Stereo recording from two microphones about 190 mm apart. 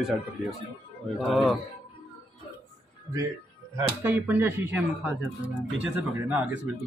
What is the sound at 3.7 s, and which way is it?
Speech, 10° right (ahead or behind).